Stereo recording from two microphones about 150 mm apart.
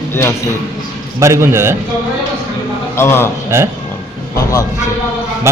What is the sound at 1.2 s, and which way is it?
Speech, 20° right (ahead or behind).